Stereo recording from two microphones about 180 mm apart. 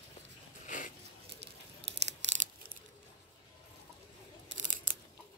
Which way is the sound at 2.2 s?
90° right.